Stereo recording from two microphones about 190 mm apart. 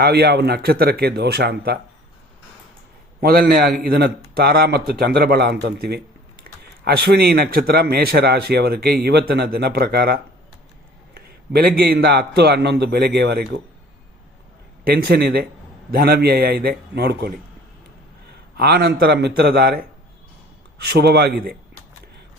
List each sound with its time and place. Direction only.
0.0 s a man's voice: 60° right (ahead or behind)
3.2 s a man's voice: 55° right (ahead or behind)
11.1 s a sound: 50° right (ahead or behind)
11.8 s a man's voice: 55° right (ahead or behind)
14.8 s a man's voice: 55° right (ahead or behind)
18.5 s a man's voice: 55° right (ahead or behind)
20.8 s a man's voice: 60° right (ahead or behind)